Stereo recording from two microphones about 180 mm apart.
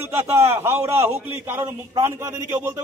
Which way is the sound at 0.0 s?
15° right (ahead or behind).